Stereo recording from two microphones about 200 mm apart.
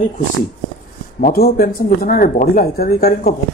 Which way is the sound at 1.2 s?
45° left (ahead or behind).